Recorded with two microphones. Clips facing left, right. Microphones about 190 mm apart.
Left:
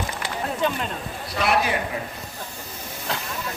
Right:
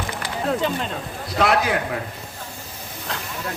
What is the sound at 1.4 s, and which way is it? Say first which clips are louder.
Speech: right 3 dB; 90° right.